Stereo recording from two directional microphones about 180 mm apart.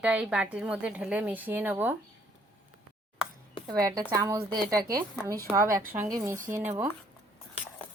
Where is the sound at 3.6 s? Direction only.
20° right (ahead or behind).